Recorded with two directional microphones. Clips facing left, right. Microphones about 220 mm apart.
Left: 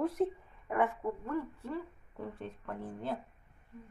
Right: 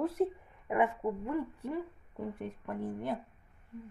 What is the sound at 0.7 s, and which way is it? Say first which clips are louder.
Speech: right 2 dB; 15° right (ahead or behind).